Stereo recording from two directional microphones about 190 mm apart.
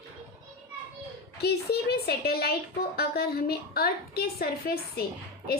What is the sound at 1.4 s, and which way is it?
A woman's voice, 60° left (ahead or behind).